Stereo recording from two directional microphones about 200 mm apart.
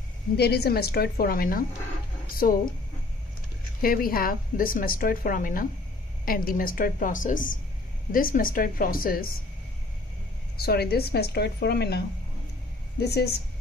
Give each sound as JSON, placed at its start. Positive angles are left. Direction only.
{"t": 0.4, "sound": "a woman's voice", "side_deg": 55}
{"t": 3.8, "sound": "a woman's voice", "side_deg": 45}
{"t": 10.6, "sound": "a woman's voice", "side_deg": 50}
{"t": 13.0, "sound": "a woman's voice", "side_deg": 55}